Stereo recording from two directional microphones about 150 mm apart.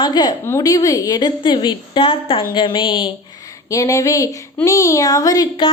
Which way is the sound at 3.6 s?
20° left (ahead or behind).